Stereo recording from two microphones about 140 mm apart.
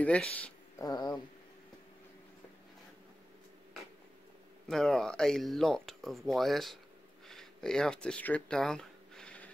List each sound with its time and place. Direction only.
0.0 s speech: 10° left (ahead or behind)
0.7 s speech: 30° left (ahead or behind)
4.6 s speech: 5° left (ahead or behind)
7.2 s a sound: 5° left (ahead or behind)